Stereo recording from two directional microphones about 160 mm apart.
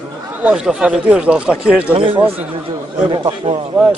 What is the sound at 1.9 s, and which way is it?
Speech, 35° right (ahead or behind).